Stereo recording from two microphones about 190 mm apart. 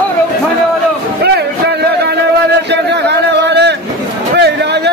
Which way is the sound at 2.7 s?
65° right (ahead or behind).